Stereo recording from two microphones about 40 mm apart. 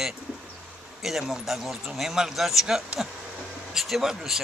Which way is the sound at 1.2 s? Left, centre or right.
Centre.